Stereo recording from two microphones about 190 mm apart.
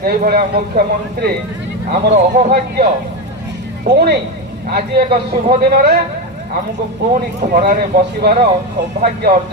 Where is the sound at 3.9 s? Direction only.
60° right (ahead or behind).